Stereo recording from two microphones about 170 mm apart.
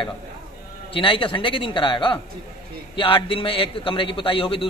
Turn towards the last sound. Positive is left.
turn(degrees=30)  # may be behind; listen again after turning